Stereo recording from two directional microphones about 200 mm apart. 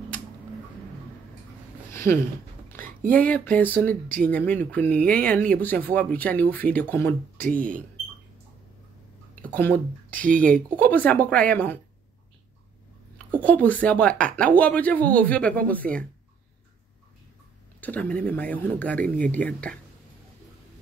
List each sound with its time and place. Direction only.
1.9 s a sound: 10° left (ahead or behind)
3.1 s speech: 10° left (ahead or behind)
9.3 s a sound: 5° left (ahead or behind)
10.1 s speech: 40° right (ahead or behind)
10.8 s speech: 10° left (ahead or behind)
13.3 s speech: 10° left (ahead or behind)
17.7 s speech: 10° left (ahead or behind)